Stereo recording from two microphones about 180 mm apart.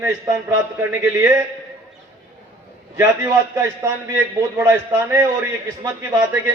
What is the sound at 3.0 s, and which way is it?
A man's voice, 15° right (ahead or behind).